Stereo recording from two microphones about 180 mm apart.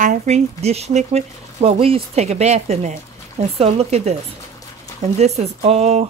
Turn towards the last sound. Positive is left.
turn(degrees=-35)  # may be behind; listen again after turning